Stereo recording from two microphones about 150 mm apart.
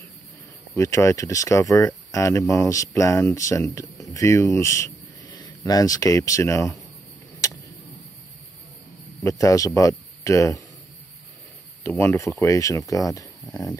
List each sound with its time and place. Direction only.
0.7 s speech: 20° left (ahead or behind)
9.2 s speech: 20° left (ahead or behind)
11.8 s speech: 15° left (ahead or behind)